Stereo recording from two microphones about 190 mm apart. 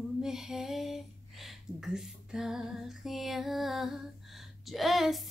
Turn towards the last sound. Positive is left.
turn(degrees=0)  # may be behind; listen again after turning